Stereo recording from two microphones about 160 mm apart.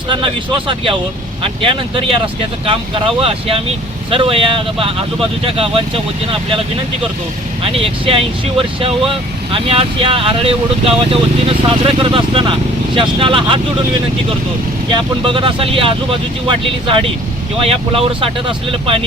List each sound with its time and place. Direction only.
0.1 s speech: 30° right (ahead or behind)
7.6 s speech: 35° right (ahead or behind)
15.2 s speech: 35° right (ahead or behind)